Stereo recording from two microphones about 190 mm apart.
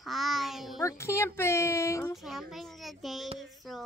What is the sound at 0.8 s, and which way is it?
Speech, 15° left (ahead or behind).